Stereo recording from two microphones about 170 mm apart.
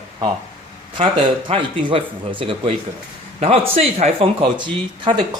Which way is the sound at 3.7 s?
35° right (ahead or behind).